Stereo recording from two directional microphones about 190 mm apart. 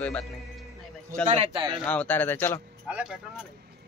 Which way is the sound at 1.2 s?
30° right (ahead or behind).